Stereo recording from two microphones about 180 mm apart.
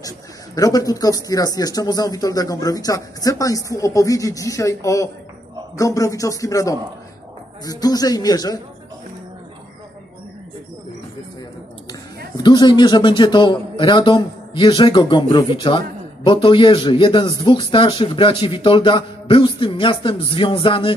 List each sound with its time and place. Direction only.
0.6 s a man's voice: 20° left (ahead or behind)
12.4 s a man's voice: 25° left (ahead or behind)